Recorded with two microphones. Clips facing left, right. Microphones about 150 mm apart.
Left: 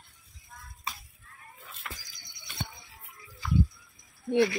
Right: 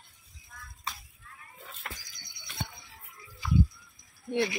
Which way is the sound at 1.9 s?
45° right (ahead or behind).